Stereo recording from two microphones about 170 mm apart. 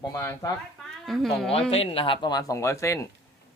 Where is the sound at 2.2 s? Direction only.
20° left (ahead or behind).